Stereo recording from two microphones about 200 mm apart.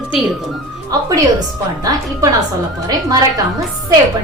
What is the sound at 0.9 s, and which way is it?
Speech, 20° right (ahead or behind).